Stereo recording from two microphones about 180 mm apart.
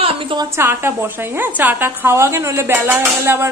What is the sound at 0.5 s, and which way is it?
A woman's voice, 15° right (ahead or behind).